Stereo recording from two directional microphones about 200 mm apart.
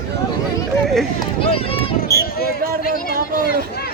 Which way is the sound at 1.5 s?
30° left (ahead or behind).